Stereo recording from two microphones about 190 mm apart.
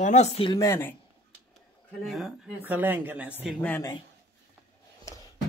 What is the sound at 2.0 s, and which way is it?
Speech, centre (ahead or behind).